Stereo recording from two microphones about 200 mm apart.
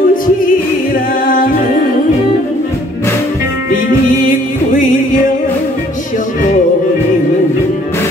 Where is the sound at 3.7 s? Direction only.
40° left (ahead or behind).